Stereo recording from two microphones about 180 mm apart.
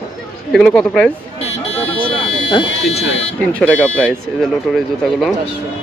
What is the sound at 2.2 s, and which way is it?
Speech, 30° left (ahead or behind).